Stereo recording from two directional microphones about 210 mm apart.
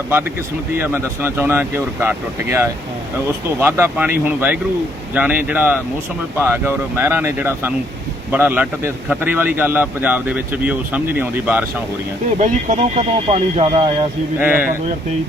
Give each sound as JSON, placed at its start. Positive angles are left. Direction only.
{"t": 0.8, "sound": "a man's voice", "side_deg": -10}
{"t": 12.4, "sound": "speech", "side_deg": -35}
{"t": 14.3, "sound": "a man's voice", "side_deg": -10}